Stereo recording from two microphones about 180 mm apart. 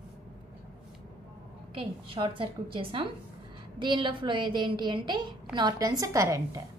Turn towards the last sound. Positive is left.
turn(degrees=-15)  # may be behind; listen again after turning